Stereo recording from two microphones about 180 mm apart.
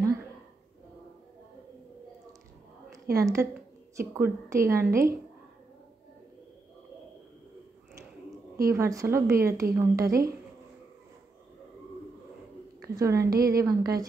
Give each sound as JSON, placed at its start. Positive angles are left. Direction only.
{"t": 3.1, "sound": "a woman's voice", "side_deg": -20}
{"t": 8.5, "sound": "a woman's voice", "side_deg": -15}
{"t": 12.8, "sound": "a woman's voice", "side_deg": -15}